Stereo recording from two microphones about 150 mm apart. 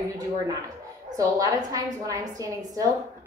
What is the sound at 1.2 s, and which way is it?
A woman's voice, 25° right (ahead or behind).